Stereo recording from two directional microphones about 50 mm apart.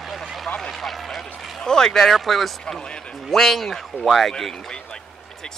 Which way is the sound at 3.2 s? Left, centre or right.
Centre.